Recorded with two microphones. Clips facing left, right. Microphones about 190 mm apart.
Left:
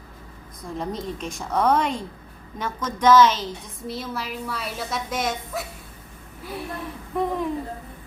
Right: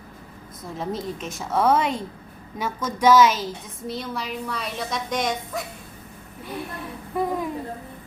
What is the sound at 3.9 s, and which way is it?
A woman's voice, 5° left (ahead or behind).